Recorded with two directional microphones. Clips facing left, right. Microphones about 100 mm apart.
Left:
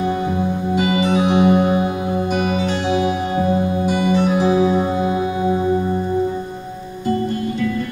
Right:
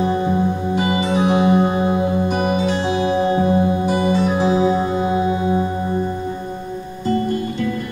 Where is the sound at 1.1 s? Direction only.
25° right (ahead or behind).